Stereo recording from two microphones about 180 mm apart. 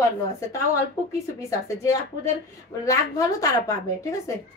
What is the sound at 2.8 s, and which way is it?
A woman's voice, 20° left (ahead or behind).